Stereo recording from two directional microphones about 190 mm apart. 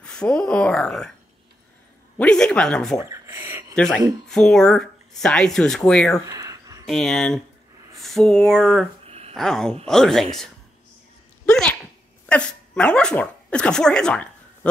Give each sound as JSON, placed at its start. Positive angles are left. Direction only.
{"t": 0.0, "sound": "speech", "side_deg": 5}
{"t": 2.1, "sound": "speech", "side_deg": 5}
{"t": 3.0, "sound": "a sound", "side_deg": -15}
{"t": 3.7, "sound": "speech", "side_deg": 5}
{"t": 6.2, "sound": "a sound", "side_deg": -20}
{"t": 6.9, "sound": "speech", "side_deg": 5}
{"t": 9.0, "sound": "a sound", "side_deg": -30}
{"t": 9.3, "sound": "speech", "side_deg": 0}
{"t": 11.5, "sound": "dog", "side_deg": 5}